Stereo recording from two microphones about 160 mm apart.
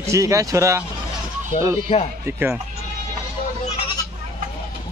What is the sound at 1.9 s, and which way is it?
Speech, 40° left (ahead or behind).